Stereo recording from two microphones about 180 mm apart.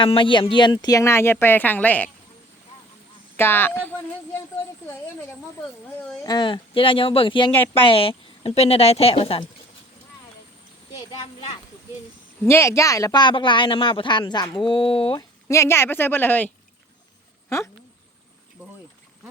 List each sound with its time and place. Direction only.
0.0 s speech: 30° left (ahead or behind); by 2.0 s 10° left (ahead or behind)
3.3 s speech: 10° left (ahead or behind)
6.2 s speech: 25° left (ahead or behind)
7.5 s speech: 10° left (ahead or behind)
7.9 s a woman's voice: 30° left (ahead or behind)
12.4 s speech: 15° left (ahead or behind); by 15.2 s 30° left (ahead or behind)
15.4 s speech: 15° left (ahead or behind)